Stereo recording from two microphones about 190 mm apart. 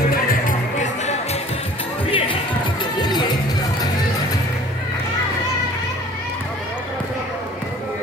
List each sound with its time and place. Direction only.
0.1 s music: 45° left (ahead or behind)
2.0 s music: 30° left (ahead or behind)